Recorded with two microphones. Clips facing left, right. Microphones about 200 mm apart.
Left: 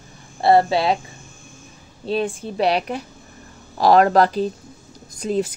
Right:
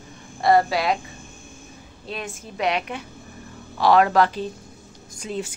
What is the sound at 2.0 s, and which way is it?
A woman's voice, 30° left (ahead or behind).